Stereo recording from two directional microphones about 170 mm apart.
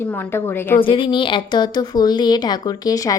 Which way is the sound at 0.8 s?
30° left (ahead or behind).